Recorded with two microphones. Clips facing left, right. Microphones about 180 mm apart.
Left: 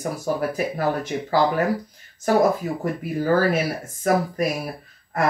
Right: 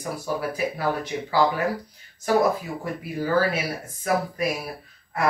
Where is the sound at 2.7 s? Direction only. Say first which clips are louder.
Left 5 dB; 45° left (ahead or behind).